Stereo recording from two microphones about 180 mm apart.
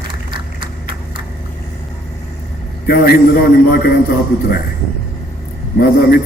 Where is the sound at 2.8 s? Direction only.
55° left (ahead or behind).